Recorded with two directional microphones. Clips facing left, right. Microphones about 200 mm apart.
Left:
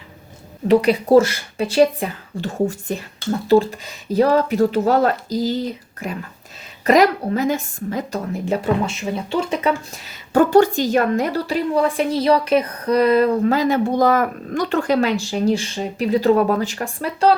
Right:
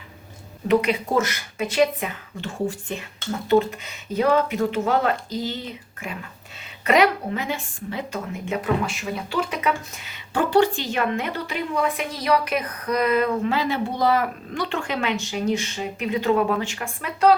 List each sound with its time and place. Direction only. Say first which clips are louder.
0.7 s a woman's voice: left 7 dB; 35° left (ahead or behind)